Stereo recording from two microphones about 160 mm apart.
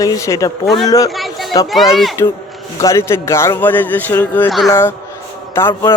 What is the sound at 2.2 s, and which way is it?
A man's voice, 20° left (ahead or behind).